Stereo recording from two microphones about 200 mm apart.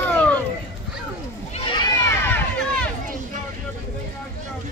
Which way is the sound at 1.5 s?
25° left (ahead or behind).